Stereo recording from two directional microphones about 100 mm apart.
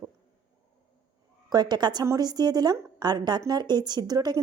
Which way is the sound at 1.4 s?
45° right (ahead or behind).